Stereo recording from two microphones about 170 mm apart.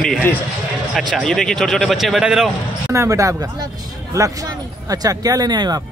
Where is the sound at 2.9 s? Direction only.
20° right (ahead or behind).